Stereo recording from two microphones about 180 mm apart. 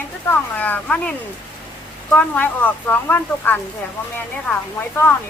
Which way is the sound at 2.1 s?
10° left (ahead or behind).